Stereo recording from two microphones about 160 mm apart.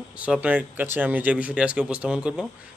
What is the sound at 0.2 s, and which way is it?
Speech, 10° right (ahead or behind).